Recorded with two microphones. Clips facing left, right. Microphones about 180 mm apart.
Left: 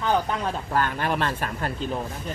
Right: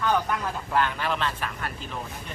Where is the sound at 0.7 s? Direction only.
50° left (ahead or behind).